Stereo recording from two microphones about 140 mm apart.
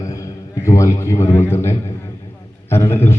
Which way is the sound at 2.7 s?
15° left (ahead or behind).